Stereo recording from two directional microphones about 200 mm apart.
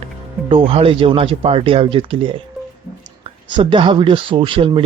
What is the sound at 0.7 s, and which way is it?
Speech, 30° right (ahead or behind).